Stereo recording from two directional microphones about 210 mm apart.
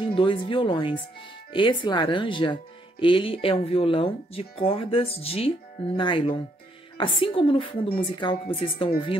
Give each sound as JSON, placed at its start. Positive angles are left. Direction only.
{"t": 0.0, "sound": "speech", "side_deg": 25}